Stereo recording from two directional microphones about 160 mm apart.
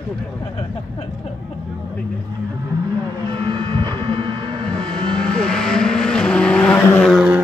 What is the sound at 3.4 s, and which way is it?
Vehicle, 25° right (ahead or behind).